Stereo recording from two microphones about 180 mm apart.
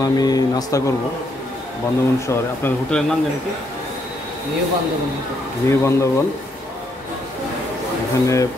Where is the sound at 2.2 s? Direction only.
15° left (ahead or behind).